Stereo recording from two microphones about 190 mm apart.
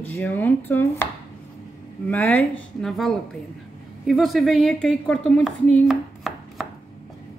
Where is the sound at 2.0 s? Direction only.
10° left (ahead or behind).